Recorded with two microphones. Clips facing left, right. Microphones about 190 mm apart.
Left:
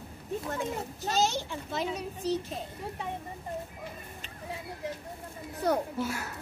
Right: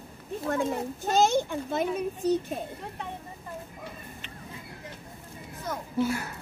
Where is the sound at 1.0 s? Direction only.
50° right (ahead or behind).